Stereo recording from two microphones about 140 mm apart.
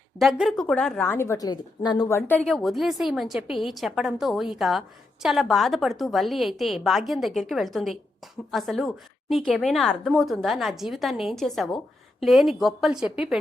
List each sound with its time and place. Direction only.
0.2 s a woman's voice: centre (ahead or behind)
1.1 s a woman's voice: 20° left (ahead or behind)
1.5 s a woman's voice: 30° left (ahead or behind); by 13.4 s 5° right (ahead or behind)